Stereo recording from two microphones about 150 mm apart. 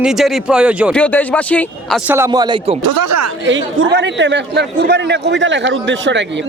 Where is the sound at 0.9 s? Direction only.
10° left (ahead or behind).